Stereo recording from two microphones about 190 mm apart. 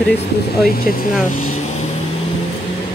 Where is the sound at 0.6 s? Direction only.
50° left (ahead or behind).